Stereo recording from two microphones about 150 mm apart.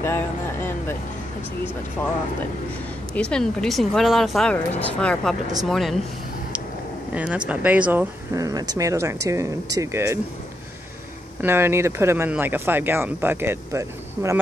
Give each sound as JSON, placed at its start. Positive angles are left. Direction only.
{"t": 0.0, "sound": "speech", "side_deg": 15}
{"t": 3.2, "sound": "speech", "side_deg": 5}
{"t": 7.2, "sound": "speech", "side_deg": -10}
{"t": 8.3, "sound": "speech", "side_deg": -20}
{"t": 11.4, "sound": "speech", "side_deg": -15}